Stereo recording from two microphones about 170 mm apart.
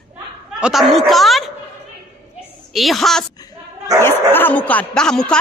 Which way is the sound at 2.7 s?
Centre (ahead or behind).